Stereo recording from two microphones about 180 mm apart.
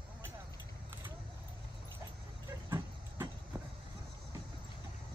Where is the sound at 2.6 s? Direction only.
20° right (ahead or behind).